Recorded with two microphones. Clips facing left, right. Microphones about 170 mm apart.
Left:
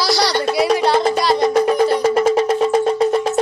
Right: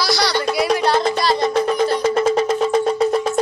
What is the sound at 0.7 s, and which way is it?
Music, 5° left (ahead or behind).